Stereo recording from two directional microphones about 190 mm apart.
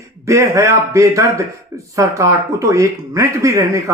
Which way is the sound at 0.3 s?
15° right (ahead or behind).